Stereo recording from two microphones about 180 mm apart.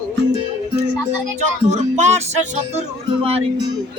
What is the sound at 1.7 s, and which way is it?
Speech, 40° right (ahead or behind).